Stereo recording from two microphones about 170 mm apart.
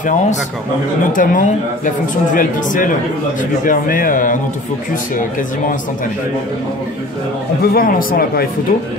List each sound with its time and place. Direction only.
1.1 s a man's voice: 50° left (ahead or behind)
7.6 s speech: 60° left (ahead or behind)